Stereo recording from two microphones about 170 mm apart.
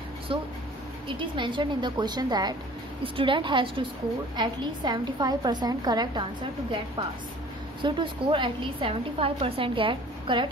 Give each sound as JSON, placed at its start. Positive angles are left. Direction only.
{"t": 0.3, "sound": "a woman's voice", "side_deg": -30}
{"t": 7.8, "sound": "a woman's voice", "side_deg": -30}